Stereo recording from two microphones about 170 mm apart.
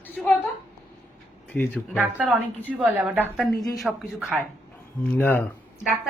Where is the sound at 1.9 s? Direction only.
5° right (ahead or behind).